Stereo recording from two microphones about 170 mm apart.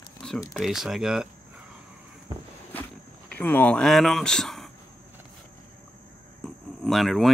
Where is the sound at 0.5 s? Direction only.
Centre (ahead or behind).